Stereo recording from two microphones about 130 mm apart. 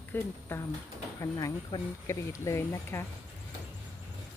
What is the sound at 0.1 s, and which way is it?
Speech, 20° left (ahead or behind).